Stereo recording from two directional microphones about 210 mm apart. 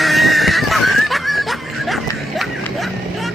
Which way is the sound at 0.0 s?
Centre (ahead or behind).